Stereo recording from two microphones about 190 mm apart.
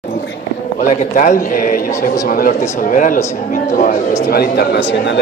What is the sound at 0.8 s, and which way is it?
A man's voice, 40° left (ahead or behind).